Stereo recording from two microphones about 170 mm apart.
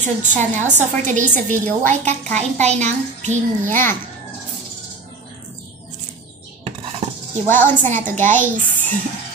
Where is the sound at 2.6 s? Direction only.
45° right (ahead or behind).